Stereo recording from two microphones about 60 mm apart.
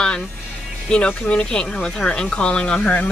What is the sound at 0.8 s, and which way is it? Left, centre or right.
Speech, centre.